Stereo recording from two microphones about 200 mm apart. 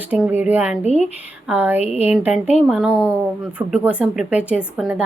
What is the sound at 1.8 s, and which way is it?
Speech, 30° left (ahead or behind).